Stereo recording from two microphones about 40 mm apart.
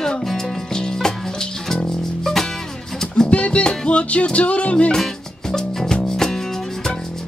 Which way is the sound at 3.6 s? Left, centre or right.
Left.